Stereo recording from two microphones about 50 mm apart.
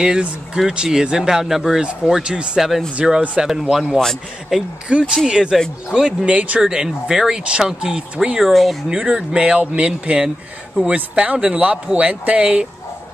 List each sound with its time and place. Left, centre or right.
0.0 s a man's voice: centre
6.6 s speech: centre
8.4 s speech: centre
8.9 s a man's voice: centre